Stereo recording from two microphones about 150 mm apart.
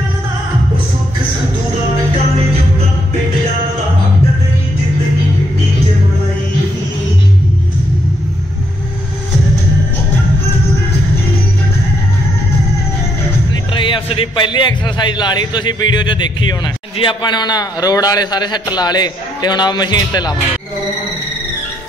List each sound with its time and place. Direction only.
13.7 s a man's voice: 35° left (ahead or behind)